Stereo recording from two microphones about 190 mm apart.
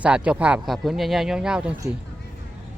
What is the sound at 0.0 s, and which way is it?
Speech, 5° right (ahead or behind).